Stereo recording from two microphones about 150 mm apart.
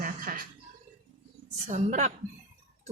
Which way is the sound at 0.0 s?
65° right (ahead or behind).